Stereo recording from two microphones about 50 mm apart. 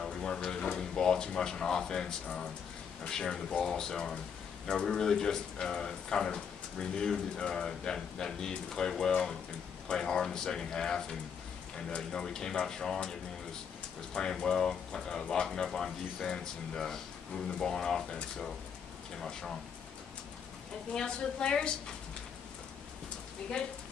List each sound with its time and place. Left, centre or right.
0.0 s speech: centre
14.3 s speech: centre
20.9 s speech: centre